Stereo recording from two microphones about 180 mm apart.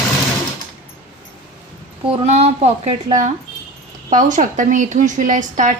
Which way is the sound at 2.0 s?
35° right (ahead or behind).